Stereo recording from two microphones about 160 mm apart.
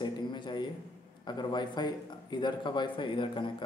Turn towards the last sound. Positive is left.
turn(degrees=30)  # may be behind; listen again after turning